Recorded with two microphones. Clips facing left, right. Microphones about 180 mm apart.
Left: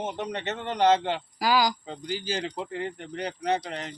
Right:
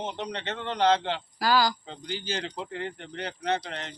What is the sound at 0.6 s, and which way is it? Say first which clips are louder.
Speech: left 1 dB; 45° left (ahead or behind).